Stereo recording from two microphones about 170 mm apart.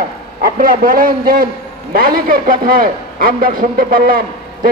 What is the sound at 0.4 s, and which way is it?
A man's voice, 55° right (ahead or behind).